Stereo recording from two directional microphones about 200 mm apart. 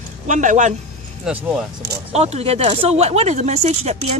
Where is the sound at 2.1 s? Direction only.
30° right (ahead or behind).